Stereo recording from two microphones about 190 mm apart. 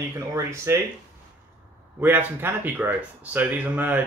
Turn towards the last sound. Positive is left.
turn(degrees=-10)  # may be behind; listen again after turning